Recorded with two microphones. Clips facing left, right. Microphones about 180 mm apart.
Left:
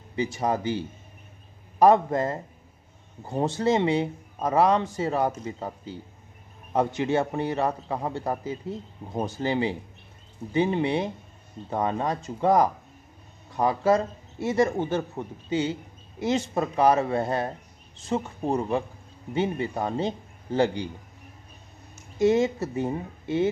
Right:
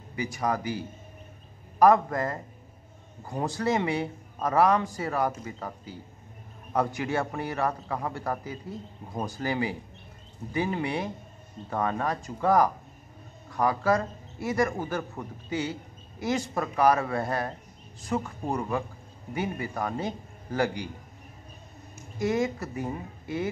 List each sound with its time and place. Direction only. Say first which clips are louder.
0.1 s a man's voice: left 3 dB; 25° left (ahead or behind)
22.2 s a man's voice: left 6 dB; 25° left (ahead or behind)